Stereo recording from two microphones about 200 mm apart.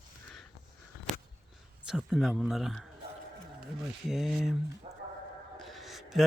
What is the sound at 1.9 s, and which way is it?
Speech, 5° right (ahead or behind).